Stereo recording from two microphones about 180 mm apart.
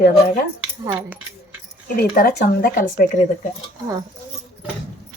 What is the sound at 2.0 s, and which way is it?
Speech, 55° left (ahead or behind).